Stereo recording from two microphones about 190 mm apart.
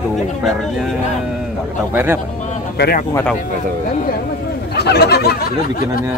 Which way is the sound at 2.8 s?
55° left (ahead or behind).